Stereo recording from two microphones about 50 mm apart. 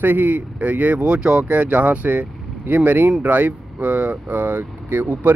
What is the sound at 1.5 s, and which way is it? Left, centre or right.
Speech, right.